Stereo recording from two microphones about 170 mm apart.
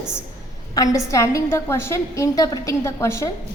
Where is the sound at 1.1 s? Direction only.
15° left (ahead or behind).